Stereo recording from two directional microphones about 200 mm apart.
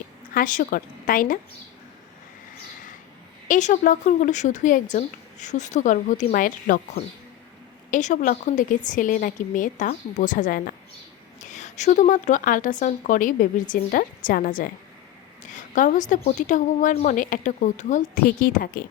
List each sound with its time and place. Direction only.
0.3 s a woman's voice: 40° left (ahead or behind)
3.5 s a woman's voice: 40° left (ahead or behind)